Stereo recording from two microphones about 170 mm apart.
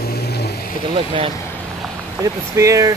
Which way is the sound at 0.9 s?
30° right (ahead or behind).